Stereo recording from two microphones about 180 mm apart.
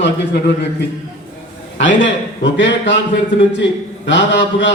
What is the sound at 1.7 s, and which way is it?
Speech, 90° left.